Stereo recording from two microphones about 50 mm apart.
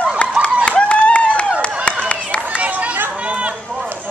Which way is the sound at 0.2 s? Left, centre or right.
Left.